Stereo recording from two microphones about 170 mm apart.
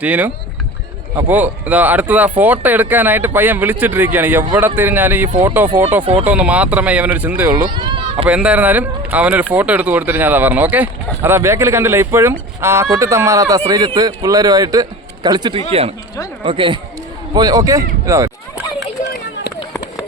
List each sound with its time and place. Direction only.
0.0 s speech: 10° right (ahead or behind)
7.8 s run: 30° right (ahead or behind)
8.3 s a man's voice: 5° right (ahead or behind)